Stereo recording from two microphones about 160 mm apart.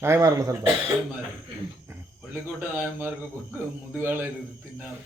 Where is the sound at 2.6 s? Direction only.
15° right (ahead or behind).